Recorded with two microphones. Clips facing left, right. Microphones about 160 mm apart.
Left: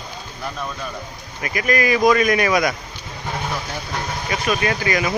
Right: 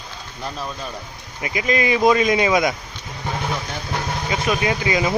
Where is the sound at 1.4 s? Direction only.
20° right (ahead or behind).